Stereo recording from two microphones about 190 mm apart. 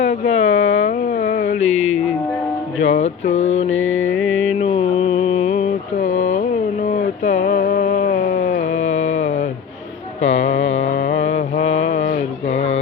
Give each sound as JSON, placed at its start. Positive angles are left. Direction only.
{"t": 0.0, "sound": "a sound", "side_deg": 35}
{"t": 3.7, "sound": "mantra", "side_deg": 90}
{"t": 4.1, "sound": "music", "side_deg": 0}
{"t": 4.4, "sound": "mantra", "side_deg": 35}
{"t": 6.8, "sound": "a sound", "side_deg": 40}
{"t": 10.2, "sound": "music", "side_deg": 35}
{"t": 10.8, "sound": "mantra", "side_deg": 40}